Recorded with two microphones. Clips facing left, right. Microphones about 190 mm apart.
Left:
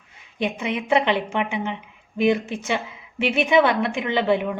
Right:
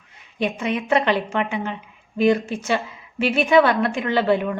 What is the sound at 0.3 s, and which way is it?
A woman's voice, 15° left (ahead or behind).